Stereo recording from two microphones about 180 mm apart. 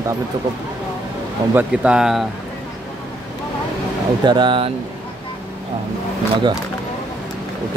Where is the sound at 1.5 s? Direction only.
5° right (ahead or behind).